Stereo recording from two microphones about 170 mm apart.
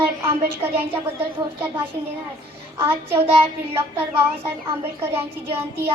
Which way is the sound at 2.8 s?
15° right (ahead or behind).